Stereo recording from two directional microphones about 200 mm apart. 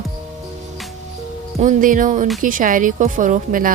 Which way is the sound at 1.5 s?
40° right (ahead or behind).